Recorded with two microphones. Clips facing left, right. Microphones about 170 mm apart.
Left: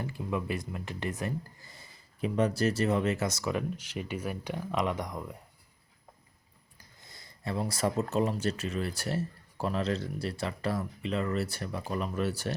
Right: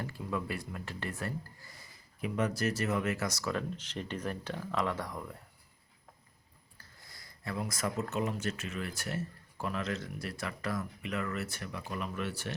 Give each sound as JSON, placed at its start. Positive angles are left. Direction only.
{"t": 0.0, "sound": "speech", "side_deg": 20}
{"t": 6.7, "sound": "speech", "side_deg": 20}